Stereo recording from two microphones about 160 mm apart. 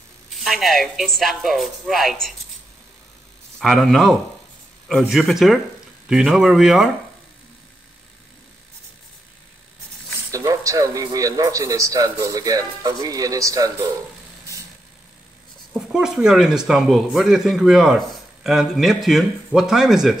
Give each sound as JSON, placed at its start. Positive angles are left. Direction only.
{"t": 0.3, "sound": "speech", "side_deg": 0}
{"t": 3.5, "sound": "speech", "side_deg": 0}
{"t": 10.3, "sound": "a man's voice", "side_deg": -20}
{"t": 15.7, "sound": "speech", "side_deg": -5}